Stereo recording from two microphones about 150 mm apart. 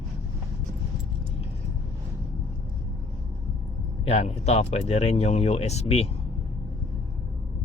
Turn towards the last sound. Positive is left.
turn(degrees=45)  # may be behind; listen again after turning